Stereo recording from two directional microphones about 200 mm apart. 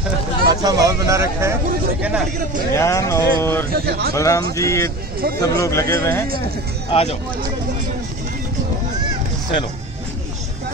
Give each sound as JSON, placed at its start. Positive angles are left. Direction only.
{"t": 0.5, "sound": "speech", "side_deg": -20}
{"t": 2.7, "sound": "speech", "side_deg": 15}
{"t": 3.8, "sound": "speech", "side_deg": -50}
{"t": 4.1, "sound": "speech", "side_deg": 15}
{"t": 6.9, "sound": "speech", "side_deg": 30}